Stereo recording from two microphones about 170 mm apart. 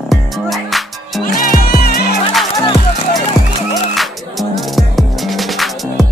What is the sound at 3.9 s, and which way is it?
Music, centre (ahead or behind).